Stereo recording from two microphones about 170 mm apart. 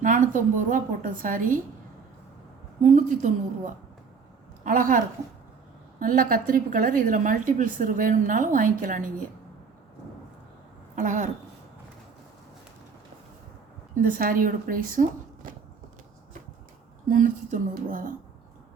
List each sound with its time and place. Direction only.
0.0 s a woman's voice: 50° right (ahead or behind)
2.8 s a woman's voice: 45° right (ahead or behind)
10.9 s a woman's voice: 45° right (ahead or behind)
13.9 s a woman's voice: 55° right (ahead or behind)
17.1 s a woman's voice: 50° right (ahead or behind)